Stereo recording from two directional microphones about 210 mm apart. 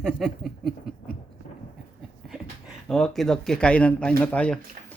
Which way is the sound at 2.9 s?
Centre (ahead or behind).